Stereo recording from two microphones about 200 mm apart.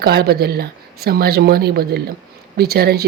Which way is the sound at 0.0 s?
50° right (ahead or behind).